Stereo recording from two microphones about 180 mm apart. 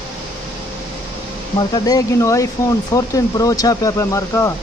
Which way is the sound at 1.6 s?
20° left (ahead or behind).